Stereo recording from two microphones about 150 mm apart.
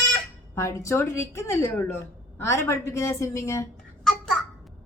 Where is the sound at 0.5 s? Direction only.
20° left (ahead or behind).